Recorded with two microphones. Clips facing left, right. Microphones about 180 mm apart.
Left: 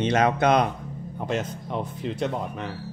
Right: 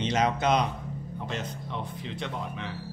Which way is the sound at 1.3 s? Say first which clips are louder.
Left 8 dB; 45° left (ahead or behind).